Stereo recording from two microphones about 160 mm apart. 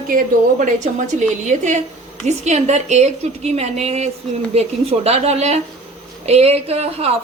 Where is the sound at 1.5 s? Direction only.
50° right (ahead or behind).